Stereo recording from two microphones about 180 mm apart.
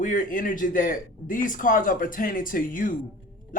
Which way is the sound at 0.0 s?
50° left (ahead or behind).